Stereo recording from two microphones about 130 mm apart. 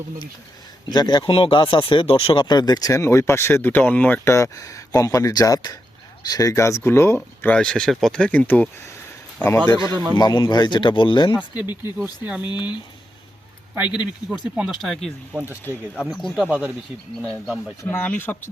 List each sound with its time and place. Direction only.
0.9 s speech: 35° left (ahead or behind)
7.4 s speech: 10° left (ahead or behind)
9.6 s speech: 25° left (ahead or behind)
9.9 s a man's voice: 35° right (ahead or behind)
10.2 s speech: 35° left (ahead or behind)
12.0 s speech: 15° right (ahead or behind)
13.7 s speech: 10° right (ahead or behind)
14.8 s speech: centre (ahead or behind)
15.6 s speech: 15° left (ahead or behind)
16.0 s speech: 5° right (ahead or behind)
17.8 s speech: 15° left (ahead or behind)